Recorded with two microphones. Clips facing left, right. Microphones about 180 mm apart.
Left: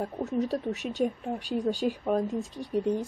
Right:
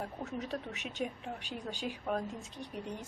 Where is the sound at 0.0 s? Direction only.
40° left (ahead or behind).